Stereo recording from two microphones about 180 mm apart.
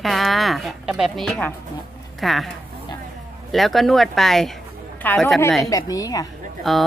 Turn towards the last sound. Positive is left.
turn(degrees=0)  # may be behind; listen again after turning